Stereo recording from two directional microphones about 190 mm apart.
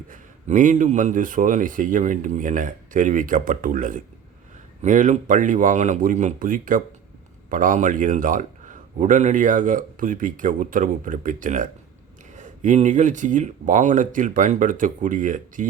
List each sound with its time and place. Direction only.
0.1 s a man's voice: 45° right (ahead or behind)